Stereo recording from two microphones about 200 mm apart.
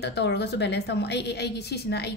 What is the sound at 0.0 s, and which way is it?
A woman's voice, 60° left (ahead or behind).